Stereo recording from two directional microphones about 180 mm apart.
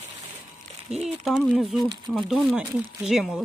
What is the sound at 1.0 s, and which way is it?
Speech, centre (ahead or behind).